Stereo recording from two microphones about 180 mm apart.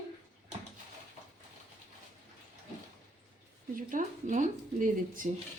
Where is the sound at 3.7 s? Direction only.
50° right (ahead or behind).